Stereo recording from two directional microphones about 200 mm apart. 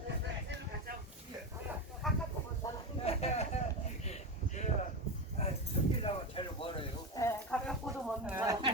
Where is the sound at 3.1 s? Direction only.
30° left (ahead or behind).